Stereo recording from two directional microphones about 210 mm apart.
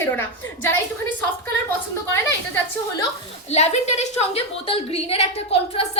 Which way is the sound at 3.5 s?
30° left (ahead or behind).